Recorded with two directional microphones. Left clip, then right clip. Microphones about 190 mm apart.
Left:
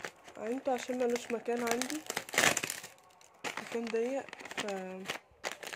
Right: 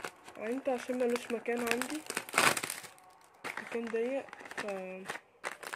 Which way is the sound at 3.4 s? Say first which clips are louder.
Left 1 dB; 25° left (ahead or behind).